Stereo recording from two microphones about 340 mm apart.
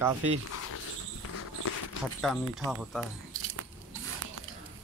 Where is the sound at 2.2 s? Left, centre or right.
Centre.